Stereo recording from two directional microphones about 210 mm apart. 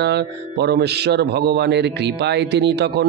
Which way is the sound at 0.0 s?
55° right (ahead or behind).